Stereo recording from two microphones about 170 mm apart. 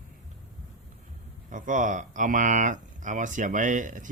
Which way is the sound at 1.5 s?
50° right (ahead or behind).